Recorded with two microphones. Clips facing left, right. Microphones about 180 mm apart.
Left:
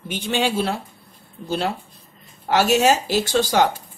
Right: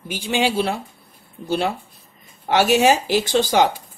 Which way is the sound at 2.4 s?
15° right (ahead or behind).